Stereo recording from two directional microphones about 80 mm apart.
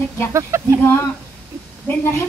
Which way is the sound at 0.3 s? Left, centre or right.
Right.